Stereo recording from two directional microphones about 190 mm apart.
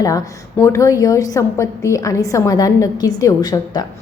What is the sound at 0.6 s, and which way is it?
A woman's voice, 15° left (ahead or behind).